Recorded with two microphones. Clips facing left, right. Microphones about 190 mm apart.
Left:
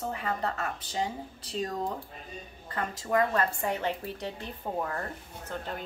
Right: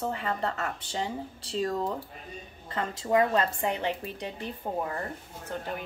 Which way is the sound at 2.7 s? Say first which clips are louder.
Right 3 dB; 20° right (ahead or behind).